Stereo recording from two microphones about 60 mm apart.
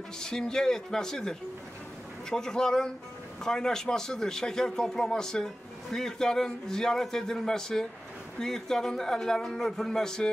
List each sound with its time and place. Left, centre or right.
0.2 s a man's voice: centre